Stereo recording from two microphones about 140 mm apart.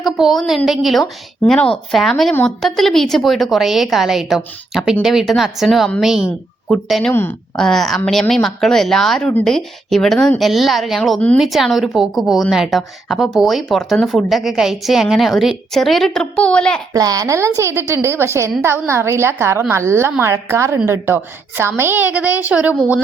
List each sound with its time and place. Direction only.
0.0 s a woman's voice: centre (ahead or behind)
7.1 s a child's voice: 15° left (ahead or behind)
7.5 s a woman's voice: 5° left (ahead or behind)
16.9 s a woman's voice: 25° right (ahead or behind)